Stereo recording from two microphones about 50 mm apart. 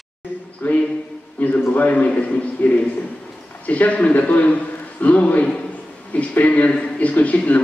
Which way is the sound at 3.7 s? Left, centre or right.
Left.